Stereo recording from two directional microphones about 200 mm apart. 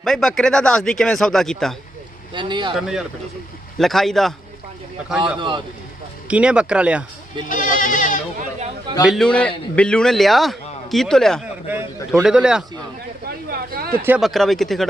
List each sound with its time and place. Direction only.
0.0 s speech: centre (ahead or behind)
2.3 s speech: 25° right (ahead or behind)
2.7 s speech: centre (ahead or behind)
5.4 s speech: 25° right (ahead or behind)
6.2 s speech: 5° right (ahead or behind)
7.4 s speech: 40° left (ahead or behind)
9.0 s speech: centre (ahead or behind)
13.2 s a sound: 50° right (ahead or behind)
14.0 s speech: 5° right (ahead or behind)